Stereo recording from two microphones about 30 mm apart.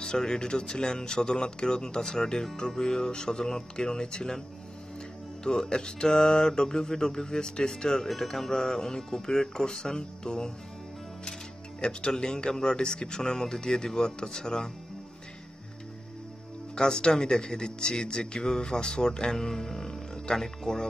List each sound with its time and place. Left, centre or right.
0.0 s speech: centre
5.4 s speech: left
8.1 s speech: centre; by 10.5 s left
11.8 s speech: left
16.7 s speech: left
19.3 s speech: centre